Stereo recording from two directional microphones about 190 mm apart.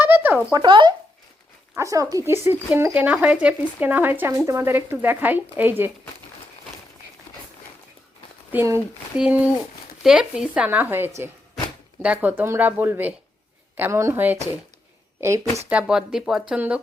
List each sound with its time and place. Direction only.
0.0 s a sound: 10° right (ahead or behind)
0.6 s speech: 25° right (ahead or behind)
8.5 s speech: 10° right (ahead or behind)